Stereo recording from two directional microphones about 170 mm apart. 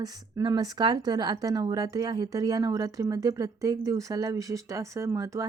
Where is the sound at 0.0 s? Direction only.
25° right (ahead or behind).